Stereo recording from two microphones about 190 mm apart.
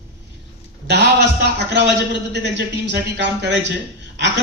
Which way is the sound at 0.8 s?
65° right (ahead or behind).